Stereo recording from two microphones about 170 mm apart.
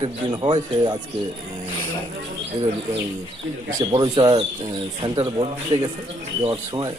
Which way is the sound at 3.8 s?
25° right (ahead or behind).